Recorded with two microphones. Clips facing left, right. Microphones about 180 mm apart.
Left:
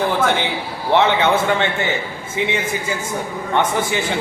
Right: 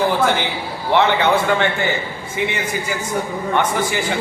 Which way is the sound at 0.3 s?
20° left (ahead or behind).